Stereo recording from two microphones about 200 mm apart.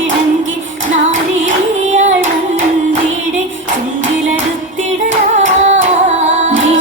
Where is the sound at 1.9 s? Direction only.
35° right (ahead or behind).